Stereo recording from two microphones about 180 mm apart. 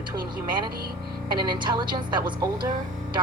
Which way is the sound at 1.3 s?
25° right (ahead or behind).